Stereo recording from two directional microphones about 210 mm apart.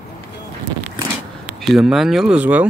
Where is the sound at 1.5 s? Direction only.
Centre (ahead or behind).